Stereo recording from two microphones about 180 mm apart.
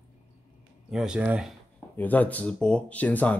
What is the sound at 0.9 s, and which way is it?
Speech, 5° right (ahead or behind).